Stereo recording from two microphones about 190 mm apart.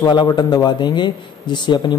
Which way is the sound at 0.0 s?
20° left (ahead or behind).